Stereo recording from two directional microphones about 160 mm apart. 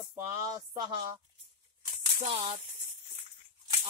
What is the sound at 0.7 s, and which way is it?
Speech, 25° right (ahead or behind).